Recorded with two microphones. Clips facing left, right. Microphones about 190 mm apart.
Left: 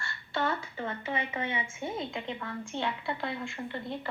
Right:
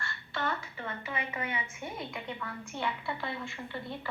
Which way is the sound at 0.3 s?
25° left (ahead or behind).